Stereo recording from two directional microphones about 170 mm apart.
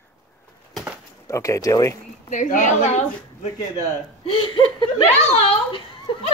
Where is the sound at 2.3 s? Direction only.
50° left (ahead or behind).